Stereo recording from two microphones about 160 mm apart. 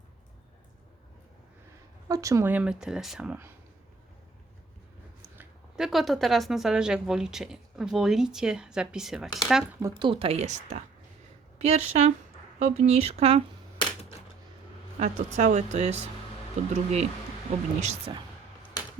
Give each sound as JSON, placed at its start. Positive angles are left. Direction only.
{"t": 2.0, "sound": "speech", "side_deg": -20}
{"t": 5.4, "sound": "speech", "side_deg": -5}
{"t": 9.8, "sound": "speech", "side_deg": -30}
{"t": 14.9, "sound": "speech", "side_deg": -45}